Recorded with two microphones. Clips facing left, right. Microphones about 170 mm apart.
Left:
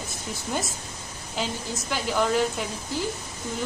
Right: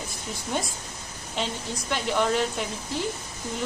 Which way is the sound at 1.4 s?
Centre (ahead or behind).